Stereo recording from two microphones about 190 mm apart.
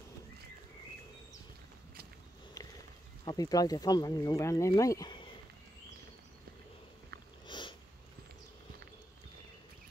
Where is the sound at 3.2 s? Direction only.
20° left (ahead or behind).